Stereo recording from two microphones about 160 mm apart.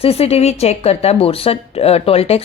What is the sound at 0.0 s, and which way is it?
Speech, 40° left (ahead or behind).